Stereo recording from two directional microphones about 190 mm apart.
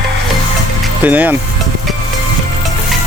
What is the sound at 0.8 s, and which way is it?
Music, 10° right (ahead or behind).